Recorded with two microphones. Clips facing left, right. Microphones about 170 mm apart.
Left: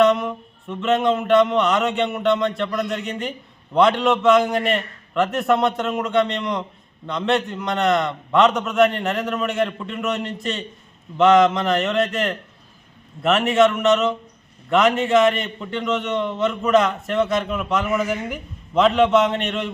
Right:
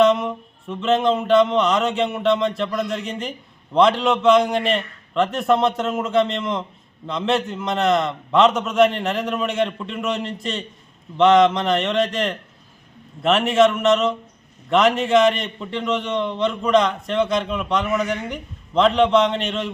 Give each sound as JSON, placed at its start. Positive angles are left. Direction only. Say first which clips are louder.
{"t": 0.0, "sound": "a man's voice", "louder": "even", "side_deg": 0}